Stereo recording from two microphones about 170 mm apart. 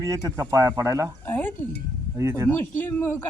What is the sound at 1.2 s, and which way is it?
Speech, 10° left (ahead or behind).